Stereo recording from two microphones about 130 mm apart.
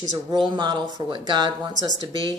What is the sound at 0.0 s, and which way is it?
Speech, 30° right (ahead or behind).